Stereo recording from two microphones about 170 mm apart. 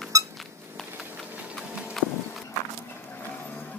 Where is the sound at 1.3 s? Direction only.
5° right (ahead or behind).